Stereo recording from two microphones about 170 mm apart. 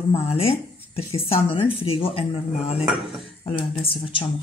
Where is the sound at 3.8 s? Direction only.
30° left (ahead or behind).